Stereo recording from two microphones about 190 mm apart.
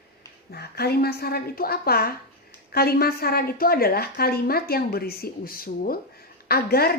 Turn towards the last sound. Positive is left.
turn(degrees=55)  # may be behind; listen again after turning